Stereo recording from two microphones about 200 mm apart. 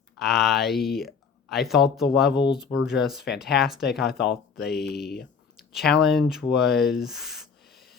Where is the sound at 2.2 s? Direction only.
60° left (ahead or behind).